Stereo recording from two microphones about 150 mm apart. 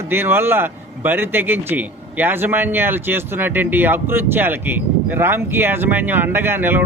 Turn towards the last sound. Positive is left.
turn(degrees=-15)  # may be behind; listen again after turning